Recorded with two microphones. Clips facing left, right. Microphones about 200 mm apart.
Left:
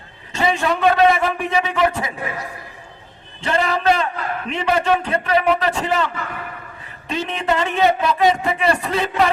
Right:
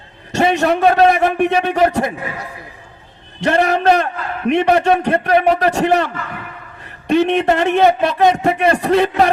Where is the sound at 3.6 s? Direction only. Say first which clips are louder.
Right 3 dB; 45° right (ahead or behind).